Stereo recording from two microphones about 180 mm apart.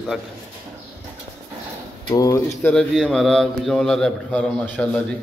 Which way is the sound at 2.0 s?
20° left (ahead or behind).